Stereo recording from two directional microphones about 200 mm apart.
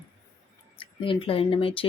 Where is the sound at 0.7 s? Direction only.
25° left (ahead or behind).